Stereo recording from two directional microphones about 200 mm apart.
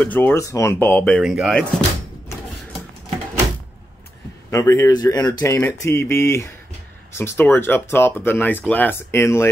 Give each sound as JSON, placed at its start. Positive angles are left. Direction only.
{"t": 0.0, "sound": "speech", "side_deg": 10}
{"t": 4.5, "sound": "speech", "side_deg": 15}